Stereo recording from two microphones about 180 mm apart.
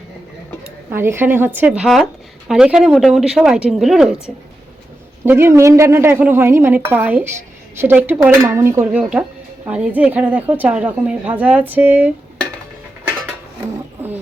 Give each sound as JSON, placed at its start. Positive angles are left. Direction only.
{"t": 0.9, "sound": "a woman's voice", "side_deg": -15}
{"t": 5.2, "sound": "a woman's voice", "side_deg": -10}